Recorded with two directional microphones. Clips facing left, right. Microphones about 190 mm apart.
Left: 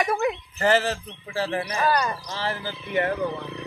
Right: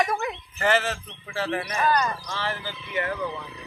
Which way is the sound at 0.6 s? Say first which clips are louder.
Left 1 dB; 35° left (ahead or behind).